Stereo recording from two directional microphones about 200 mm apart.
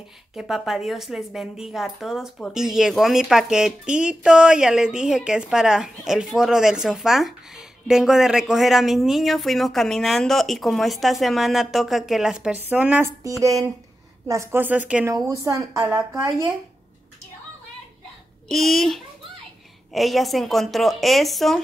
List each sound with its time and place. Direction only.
0.3 s a woman's voice: centre (ahead or behind)
18.5 s a woman's voice: centre (ahead or behind)